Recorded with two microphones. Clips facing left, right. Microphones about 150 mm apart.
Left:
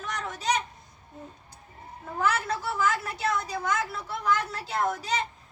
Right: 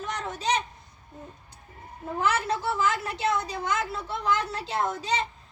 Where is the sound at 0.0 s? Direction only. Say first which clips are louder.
Right 2 dB; 25° right (ahead or behind).